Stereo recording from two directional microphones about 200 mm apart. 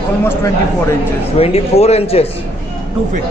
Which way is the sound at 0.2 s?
15° left (ahead or behind).